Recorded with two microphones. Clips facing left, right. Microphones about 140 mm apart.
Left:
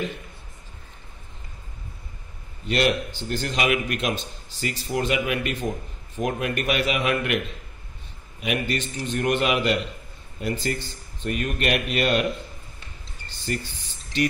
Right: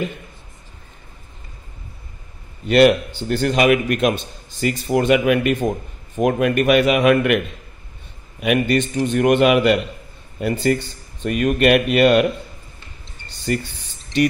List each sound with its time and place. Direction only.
2.7 s a man's voice: 65° right (ahead or behind)
6.1 s a man's voice: 70° right (ahead or behind)
8.4 s a man's voice: 65° right (ahead or behind)